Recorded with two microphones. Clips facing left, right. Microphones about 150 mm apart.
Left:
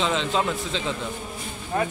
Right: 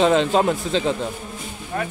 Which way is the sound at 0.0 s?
45° right (ahead or behind).